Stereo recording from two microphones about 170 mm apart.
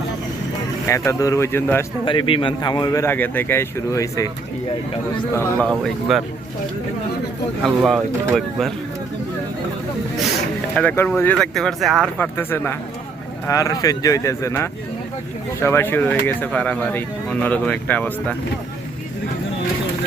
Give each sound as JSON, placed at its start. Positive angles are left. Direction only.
{"t": 0.9, "sound": "speech", "side_deg": 15}
{"t": 2.0, "sound": "a man's voice", "side_deg": 30}
{"t": 5.3, "sound": "speech", "side_deg": 10}
{"t": 7.9, "sound": "speech", "side_deg": -5}
{"t": 10.8, "sound": "a man's voice", "side_deg": 10}